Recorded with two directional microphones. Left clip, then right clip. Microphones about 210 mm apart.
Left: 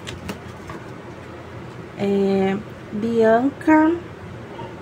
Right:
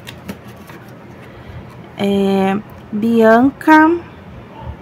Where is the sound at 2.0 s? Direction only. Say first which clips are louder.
Right 4 dB; 20° right (ahead or behind).